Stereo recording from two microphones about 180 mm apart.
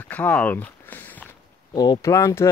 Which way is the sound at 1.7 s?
25° left (ahead or behind).